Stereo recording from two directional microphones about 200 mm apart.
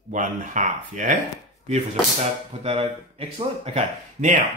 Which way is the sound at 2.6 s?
30° right (ahead or behind).